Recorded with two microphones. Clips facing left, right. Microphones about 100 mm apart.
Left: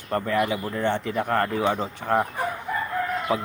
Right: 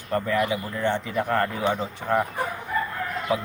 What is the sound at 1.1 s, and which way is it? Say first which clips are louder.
Speech: right 1 dB; 40° left (ahead or behind).